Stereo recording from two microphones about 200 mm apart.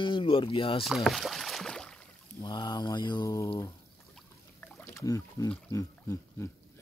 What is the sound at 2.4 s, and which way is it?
Speech, 20° left (ahead or behind).